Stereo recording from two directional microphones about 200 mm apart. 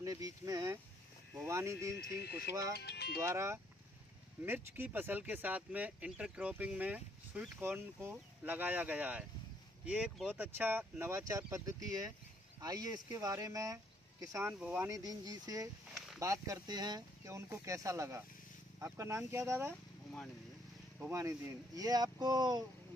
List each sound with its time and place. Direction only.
0.0 s a sound: 15° right (ahead or behind)
1.3 s speech: 15° right (ahead or behind)
2.1 s speech: 55° left (ahead or behind)
3.2 s speech: 15° right (ahead or behind)
21.1 s speech: 15° right (ahead or behind)